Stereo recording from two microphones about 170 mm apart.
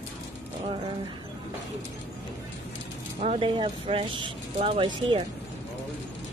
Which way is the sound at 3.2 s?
35° right (ahead or behind).